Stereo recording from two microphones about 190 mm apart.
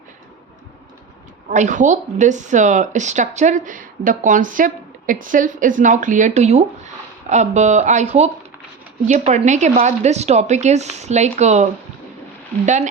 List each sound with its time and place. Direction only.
1.5 s speech: 40° right (ahead or behind)